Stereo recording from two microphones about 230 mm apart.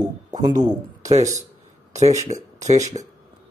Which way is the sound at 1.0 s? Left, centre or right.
Right.